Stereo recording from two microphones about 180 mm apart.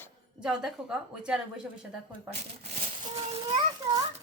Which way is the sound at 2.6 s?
30° right (ahead or behind).